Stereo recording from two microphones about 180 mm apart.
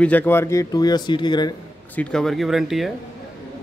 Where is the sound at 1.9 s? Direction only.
5° left (ahead or behind).